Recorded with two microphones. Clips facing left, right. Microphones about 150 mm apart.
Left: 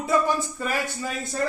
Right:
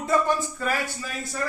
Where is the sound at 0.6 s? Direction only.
15° left (ahead or behind).